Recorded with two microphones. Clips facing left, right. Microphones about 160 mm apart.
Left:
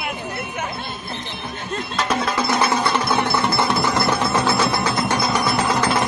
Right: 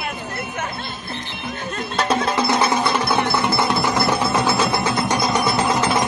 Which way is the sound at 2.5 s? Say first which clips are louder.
Right 1 dB; 20° right (ahead or behind).